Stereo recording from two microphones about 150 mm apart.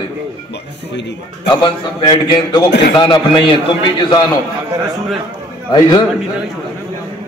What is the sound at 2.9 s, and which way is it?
A man's voice, 35° left (ahead or behind).